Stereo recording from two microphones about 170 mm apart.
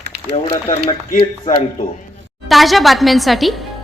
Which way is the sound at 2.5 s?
Centre (ahead or behind).